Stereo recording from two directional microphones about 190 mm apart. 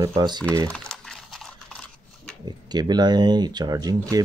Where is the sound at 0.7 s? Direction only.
5° left (ahead or behind).